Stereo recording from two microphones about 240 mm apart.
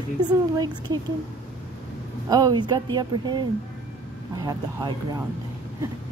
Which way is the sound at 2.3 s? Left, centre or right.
Centre.